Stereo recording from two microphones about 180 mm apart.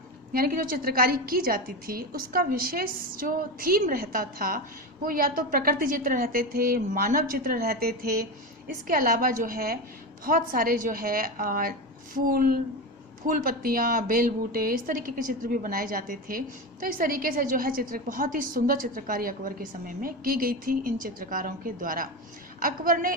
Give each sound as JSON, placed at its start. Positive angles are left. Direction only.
{"t": 0.3, "sound": "a woman's voice", "side_deg": -55}